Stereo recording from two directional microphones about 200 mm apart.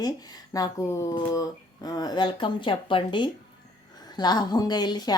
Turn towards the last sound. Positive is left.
turn(degrees=20)  # may be behind; listen again after turning